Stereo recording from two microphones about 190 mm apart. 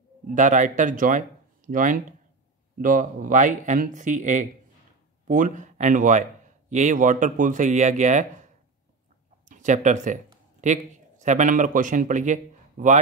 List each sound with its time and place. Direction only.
0.3 s a man's voice: 40° right (ahead or behind)
9.5 s a man's voice: 40° right (ahead or behind)